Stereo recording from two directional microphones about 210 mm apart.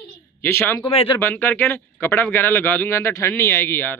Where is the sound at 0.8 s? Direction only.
25° left (ahead or behind).